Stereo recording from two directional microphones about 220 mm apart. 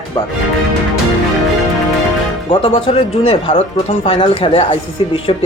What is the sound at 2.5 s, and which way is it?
Speech, 25° left (ahead or behind).